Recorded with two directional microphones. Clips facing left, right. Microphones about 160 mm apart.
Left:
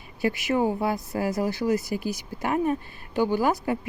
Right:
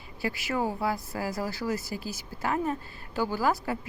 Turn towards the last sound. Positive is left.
turn(degrees=20)  # may be behind; listen again after turning